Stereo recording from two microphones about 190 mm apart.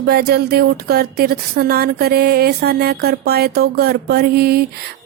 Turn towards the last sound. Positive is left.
turn(degrees=-55)  # may be behind; listen again after turning